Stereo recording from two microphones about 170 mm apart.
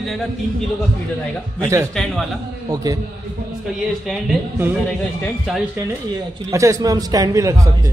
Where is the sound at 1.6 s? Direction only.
15° right (ahead or behind).